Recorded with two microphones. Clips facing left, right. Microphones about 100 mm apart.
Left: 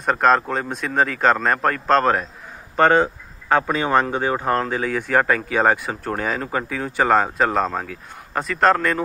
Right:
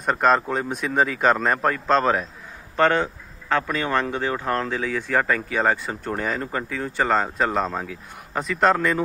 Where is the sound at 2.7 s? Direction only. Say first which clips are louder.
Left 4 dB; 15° left (ahead or behind).